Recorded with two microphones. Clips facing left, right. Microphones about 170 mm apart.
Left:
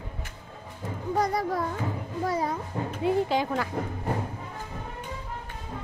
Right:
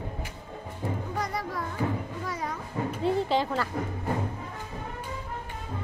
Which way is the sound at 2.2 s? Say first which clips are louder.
Left 9 dB; 35° left (ahead or behind).